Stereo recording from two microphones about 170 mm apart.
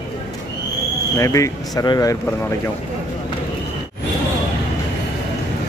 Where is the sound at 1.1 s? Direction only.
20° left (ahead or behind).